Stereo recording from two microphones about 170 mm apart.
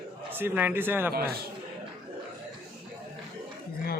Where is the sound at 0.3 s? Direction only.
10° right (ahead or behind).